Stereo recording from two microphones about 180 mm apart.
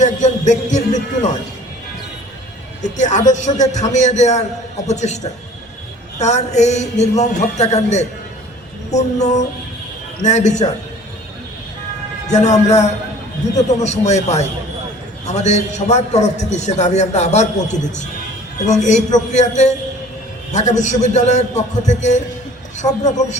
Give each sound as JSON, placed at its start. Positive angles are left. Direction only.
{"t": 0.0, "sound": "a man's voice", "side_deg": 40}
{"t": 2.8, "sound": "a man's voice", "side_deg": 40}
{"t": 12.3, "sound": "a man's voice", "side_deg": 40}
{"t": 23.0, "sound": "a man's voice", "side_deg": 40}